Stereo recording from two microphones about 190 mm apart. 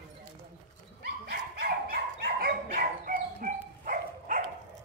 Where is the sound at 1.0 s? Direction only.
55° right (ahead or behind).